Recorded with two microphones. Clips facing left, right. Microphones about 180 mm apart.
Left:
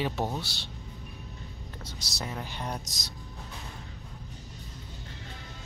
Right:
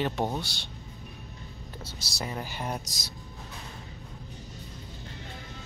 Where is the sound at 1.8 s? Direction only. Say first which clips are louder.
Right 2 dB; 5° right (ahead or behind).